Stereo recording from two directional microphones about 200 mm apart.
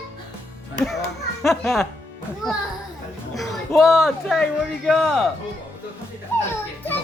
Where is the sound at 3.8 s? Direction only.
Centre (ahead or behind).